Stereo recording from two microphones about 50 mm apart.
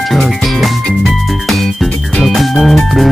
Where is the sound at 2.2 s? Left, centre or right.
Centre.